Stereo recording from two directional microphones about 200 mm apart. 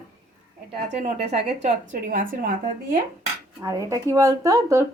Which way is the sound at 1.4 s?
55° right (ahead or behind).